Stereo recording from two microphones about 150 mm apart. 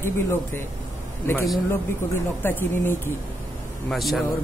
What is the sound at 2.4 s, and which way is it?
Speech, 15° left (ahead or behind).